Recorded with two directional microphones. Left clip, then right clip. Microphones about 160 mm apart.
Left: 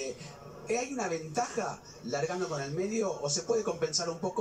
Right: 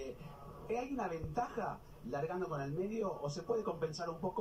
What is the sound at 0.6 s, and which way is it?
A man's voice, 15° left (ahead or behind).